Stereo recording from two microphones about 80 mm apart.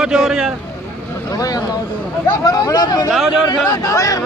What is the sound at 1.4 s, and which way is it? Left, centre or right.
Speech, left.